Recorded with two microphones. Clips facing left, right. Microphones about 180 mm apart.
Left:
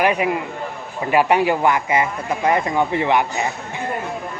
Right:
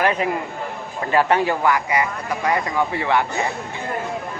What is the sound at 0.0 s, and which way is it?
A man's voice, 15° left (ahead or behind).